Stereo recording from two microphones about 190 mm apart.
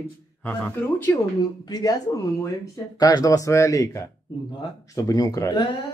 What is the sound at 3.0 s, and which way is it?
A man's voice, 20° left (ahead or behind).